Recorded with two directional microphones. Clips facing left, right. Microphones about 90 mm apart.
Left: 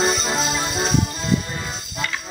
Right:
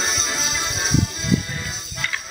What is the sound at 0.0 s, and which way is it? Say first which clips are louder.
Music: left 6 dB; 40° left (ahead or behind).